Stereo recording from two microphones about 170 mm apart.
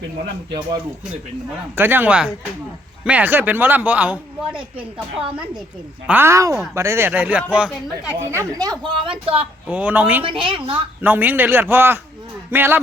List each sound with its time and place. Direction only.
1.7 s speech: 10° right (ahead or behind)
8.3 s speech: 20° right (ahead or behind)
9.6 s speech: 10° right (ahead or behind)
10.2 s a woman's voice: 30° right (ahead or behind)
11.0 s speech: 10° right (ahead or behind)